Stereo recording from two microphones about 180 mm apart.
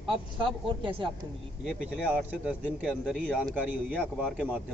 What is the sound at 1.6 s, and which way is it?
Speech, 5° right (ahead or behind).